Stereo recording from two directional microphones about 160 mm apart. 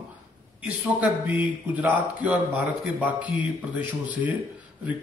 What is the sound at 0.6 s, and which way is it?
A man's voice, 10° right (ahead or behind).